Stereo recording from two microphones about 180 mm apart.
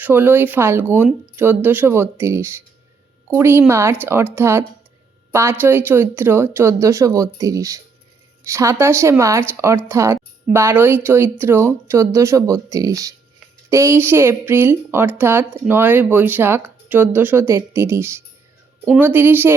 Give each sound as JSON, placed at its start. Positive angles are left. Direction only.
{"t": 0.0, "sound": "speech", "side_deg": -10}